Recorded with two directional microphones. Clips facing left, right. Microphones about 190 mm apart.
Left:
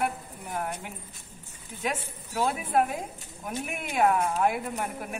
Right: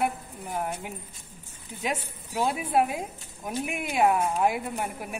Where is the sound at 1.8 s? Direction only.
10° right (ahead or behind).